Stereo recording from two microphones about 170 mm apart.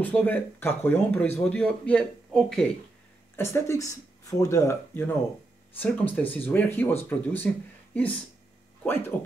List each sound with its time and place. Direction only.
0.0 s speech: 10° left (ahead or behind)
8.8 s speech: 10° left (ahead or behind)